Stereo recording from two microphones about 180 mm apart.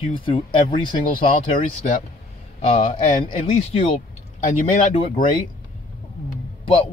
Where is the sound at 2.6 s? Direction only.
35° left (ahead or behind).